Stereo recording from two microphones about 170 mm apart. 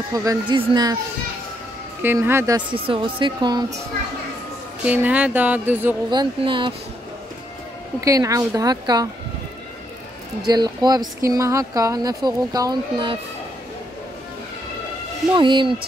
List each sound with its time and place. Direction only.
0.1 s speech: 20° right (ahead or behind)
2.0 s speech: 10° right (ahead or behind)
2.7 s speech: 30° right (ahead or behind)
4.8 s speech: 10° right (ahead or behind)
6.0 s speech: 30° right (ahead or behind)
8.0 s speech: 20° right (ahead or behind)
10.4 s speech: 25° right (ahead or behind)
15.3 s speech: 30° right (ahead or behind)